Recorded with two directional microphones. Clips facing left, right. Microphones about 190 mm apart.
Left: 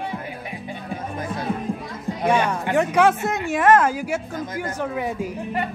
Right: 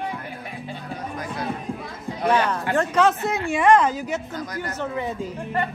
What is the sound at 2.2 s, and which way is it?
A woman's voice, 10° left (ahead or behind).